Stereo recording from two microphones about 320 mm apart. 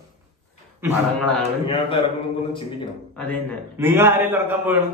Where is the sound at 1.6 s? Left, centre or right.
Centre.